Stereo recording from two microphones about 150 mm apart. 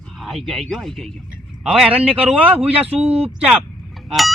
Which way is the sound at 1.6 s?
5° right (ahead or behind).